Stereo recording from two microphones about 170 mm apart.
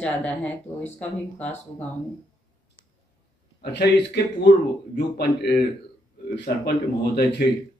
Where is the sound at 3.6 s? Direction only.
85° left.